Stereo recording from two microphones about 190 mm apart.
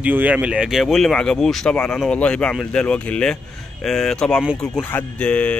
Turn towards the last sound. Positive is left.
turn(degrees=5)  # may be behind; listen again after turning